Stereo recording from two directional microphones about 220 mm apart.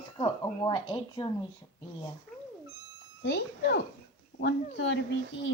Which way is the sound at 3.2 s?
50° left (ahead or behind).